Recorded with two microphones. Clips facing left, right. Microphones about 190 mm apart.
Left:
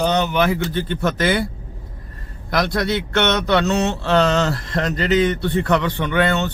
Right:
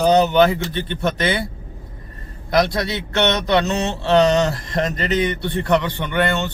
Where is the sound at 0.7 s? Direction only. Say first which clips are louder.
Left 1 dB; 20° right (ahead or behind).